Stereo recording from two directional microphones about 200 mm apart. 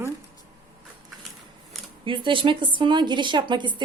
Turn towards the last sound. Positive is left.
turn(degrees=-25)  # may be behind; listen again after turning